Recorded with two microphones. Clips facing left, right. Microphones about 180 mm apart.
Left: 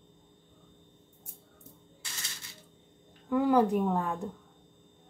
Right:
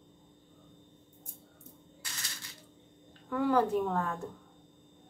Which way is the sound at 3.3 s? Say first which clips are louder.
Left 3 dB; 15° left (ahead or behind).